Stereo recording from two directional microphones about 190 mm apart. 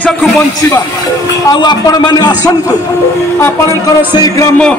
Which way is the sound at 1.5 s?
20° left (ahead or behind).